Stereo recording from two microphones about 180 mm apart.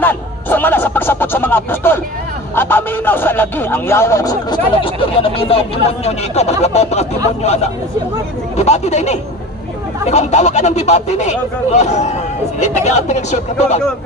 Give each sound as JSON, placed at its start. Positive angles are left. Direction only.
{"t": 0.0, "sound": "a man's voice", "side_deg": 10}